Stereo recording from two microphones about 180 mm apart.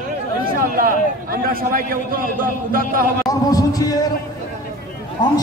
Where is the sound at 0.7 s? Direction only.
55° right (ahead or behind).